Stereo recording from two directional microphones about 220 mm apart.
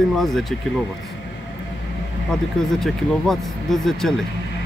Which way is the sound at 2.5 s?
Centre (ahead or behind).